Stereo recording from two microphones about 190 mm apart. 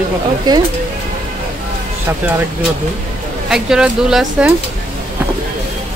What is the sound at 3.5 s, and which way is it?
Speech, 5° right (ahead or behind).